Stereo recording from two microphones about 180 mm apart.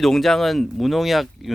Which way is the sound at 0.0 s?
Centre (ahead or behind).